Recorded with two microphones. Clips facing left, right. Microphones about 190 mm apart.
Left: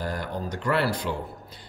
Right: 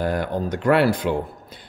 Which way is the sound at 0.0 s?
60° right (ahead or behind).